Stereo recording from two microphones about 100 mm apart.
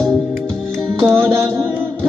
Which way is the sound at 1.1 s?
25° right (ahead or behind).